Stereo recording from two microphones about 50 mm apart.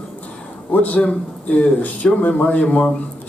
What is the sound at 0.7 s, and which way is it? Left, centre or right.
Speech, left.